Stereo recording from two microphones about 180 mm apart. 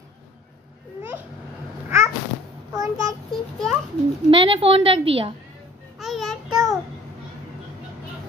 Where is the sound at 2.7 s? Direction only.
20° right (ahead or behind).